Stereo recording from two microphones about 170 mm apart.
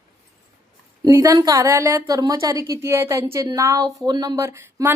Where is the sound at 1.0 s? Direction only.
20° right (ahead or behind).